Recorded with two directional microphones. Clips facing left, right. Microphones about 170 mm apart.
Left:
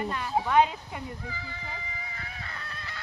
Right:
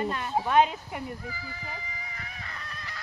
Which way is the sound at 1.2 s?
25° left (ahead or behind).